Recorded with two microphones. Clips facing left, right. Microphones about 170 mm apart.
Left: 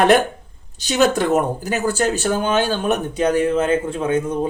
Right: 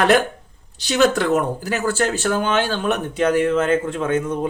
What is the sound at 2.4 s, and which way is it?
Speech, 40° left (ahead or behind).